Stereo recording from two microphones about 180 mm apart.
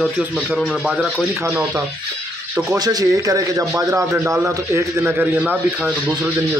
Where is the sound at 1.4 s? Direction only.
10° right (ahead or behind).